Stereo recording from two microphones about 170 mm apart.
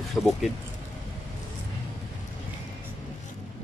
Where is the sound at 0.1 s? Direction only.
Centre (ahead or behind).